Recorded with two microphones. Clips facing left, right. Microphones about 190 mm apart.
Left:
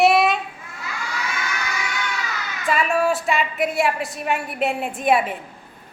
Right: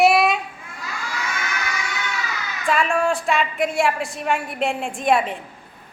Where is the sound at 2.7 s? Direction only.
5° left (ahead or behind).